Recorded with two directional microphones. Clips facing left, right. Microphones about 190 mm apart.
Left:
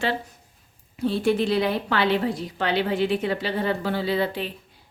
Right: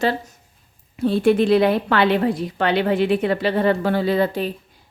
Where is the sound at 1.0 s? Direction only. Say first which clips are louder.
Right 6 dB; 55° right (ahead or behind).